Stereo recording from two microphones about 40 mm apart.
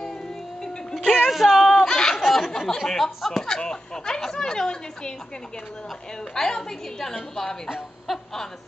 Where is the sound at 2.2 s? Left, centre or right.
Centre.